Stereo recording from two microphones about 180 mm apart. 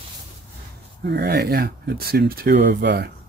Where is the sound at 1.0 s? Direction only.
65° right (ahead or behind).